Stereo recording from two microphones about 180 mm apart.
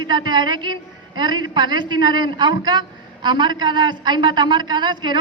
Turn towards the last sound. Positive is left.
turn(degrees=-25)  # may be behind; listen again after turning